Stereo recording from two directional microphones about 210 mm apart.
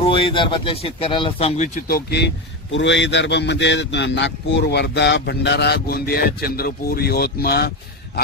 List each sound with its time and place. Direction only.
0.0 s speech: 25° left (ahead or behind)
1.6 s a man's voice: 45° left (ahead or behind)